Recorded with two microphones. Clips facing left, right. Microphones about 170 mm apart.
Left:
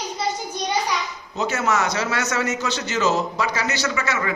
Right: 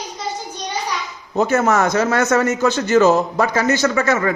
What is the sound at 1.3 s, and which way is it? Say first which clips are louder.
A man's voice: right 7 dB; 50° right (ahead or behind).